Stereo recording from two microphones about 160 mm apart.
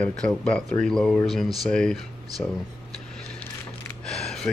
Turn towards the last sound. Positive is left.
turn(degrees=5)  # may be behind; listen again after turning